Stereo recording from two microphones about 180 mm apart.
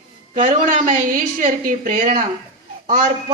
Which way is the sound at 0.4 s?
45° right (ahead or behind).